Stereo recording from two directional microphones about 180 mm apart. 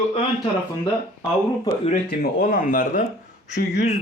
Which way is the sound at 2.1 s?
55° left (ahead or behind).